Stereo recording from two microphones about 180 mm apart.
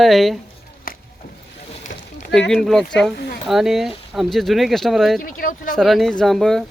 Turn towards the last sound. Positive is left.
turn(degrees=0)  # may be behind; listen again after turning